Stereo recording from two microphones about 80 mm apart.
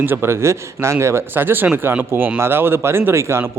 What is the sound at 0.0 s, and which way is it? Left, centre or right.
A man's voice, right.